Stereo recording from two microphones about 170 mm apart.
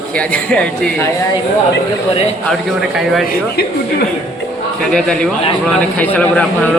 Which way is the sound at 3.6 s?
65° left (ahead or behind).